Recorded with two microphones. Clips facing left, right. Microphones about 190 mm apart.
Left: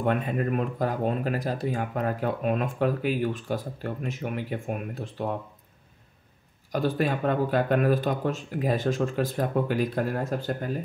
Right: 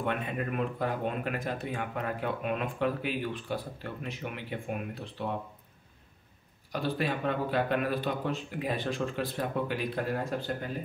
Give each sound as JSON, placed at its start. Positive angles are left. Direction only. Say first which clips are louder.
{"t": 0.0, "sound": "speech", "louder": "left 6 dB", "side_deg": 40}
{"t": 6.7, "sound": "speech", "louder": "left 5 dB", "side_deg": 45}